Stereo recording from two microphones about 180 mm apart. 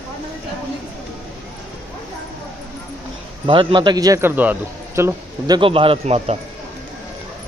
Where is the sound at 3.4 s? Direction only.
25° right (ahead or behind).